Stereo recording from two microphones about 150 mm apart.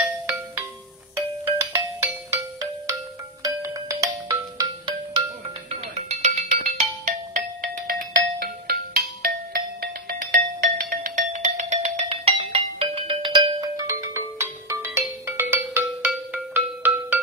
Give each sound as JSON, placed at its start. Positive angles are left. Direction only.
{"t": 1.1, "sound": "music", "side_deg": -15}
{"t": 3.4, "sound": "music", "side_deg": -25}
{"t": 5.7, "sound": "music", "side_deg": -45}
{"t": 8.4, "sound": "music", "side_deg": -90}